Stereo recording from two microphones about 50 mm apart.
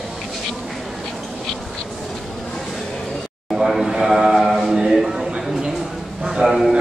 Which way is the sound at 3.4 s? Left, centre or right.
Centre.